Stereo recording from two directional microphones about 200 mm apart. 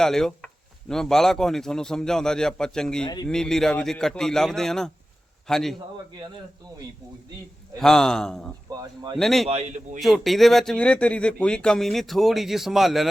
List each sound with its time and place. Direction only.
0.0 s speech: centre (ahead or behind)
7.8 s speech: centre (ahead or behind)
8.7 s speech: 20° right (ahead or behind)
9.1 s speech: centre (ahead or behind)
9.5 s a man's voice: 35° right (ahead or behind)
10.0 s speech: centre (ahead or behind)